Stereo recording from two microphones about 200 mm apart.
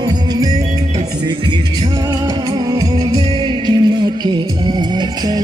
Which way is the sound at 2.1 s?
20° right (ahead or behind).